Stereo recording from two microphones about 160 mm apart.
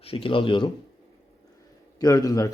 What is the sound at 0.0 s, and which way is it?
Speech, 35° left (ahead or behind).